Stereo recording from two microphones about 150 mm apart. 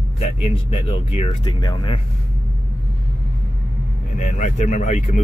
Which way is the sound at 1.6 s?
30° left (ahead or behind).